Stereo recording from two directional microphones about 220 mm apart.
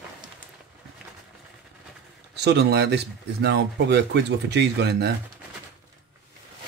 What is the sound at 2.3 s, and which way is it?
Speech, 50° right (ahead or behind).